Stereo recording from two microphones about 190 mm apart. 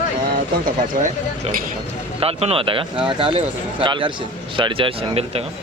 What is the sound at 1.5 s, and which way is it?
A man's voice, 35° right (ahead or behind).